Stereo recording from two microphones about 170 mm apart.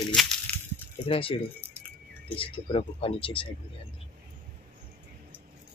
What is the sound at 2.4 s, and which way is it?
Speech, 35° left (ahead or behind).